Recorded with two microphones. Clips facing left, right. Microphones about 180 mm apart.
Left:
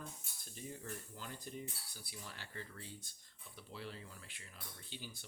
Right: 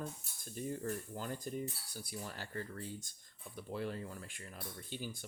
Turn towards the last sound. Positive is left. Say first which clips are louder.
# right 8 dB
turn(degrees=-50)  # may be behind; listen again after turning